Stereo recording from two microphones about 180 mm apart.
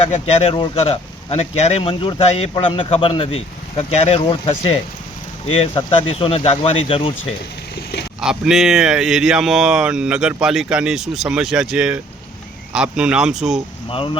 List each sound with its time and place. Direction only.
0.0 s speech: 35° left (ahead or behind)
8.2 s speech: 5° right (ahead or behind)
13.9 s speech: 30° left (ahead or behind)